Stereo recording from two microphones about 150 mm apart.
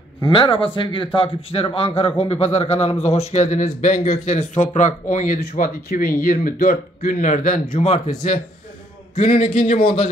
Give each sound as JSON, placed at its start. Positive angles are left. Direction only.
{"t": 0.3, "sound": "a man's voice", "side_deg": 35}
{"t": 7.8, "sound": "a man's voice", "side_deg": 50}
{"t": 9.3, "sound": "a man's voice", "side_deg": 40}